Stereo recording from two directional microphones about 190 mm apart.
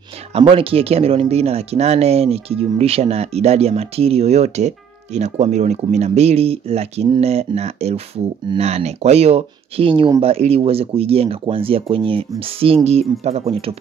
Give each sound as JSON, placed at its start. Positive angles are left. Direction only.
{"t": 0.3, "sound": "speech", "side_deg": -30}